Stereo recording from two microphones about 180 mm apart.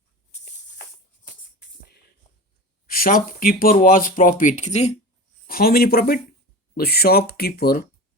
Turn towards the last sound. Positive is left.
turn(degrees=60)  # may be behind; listen again after turning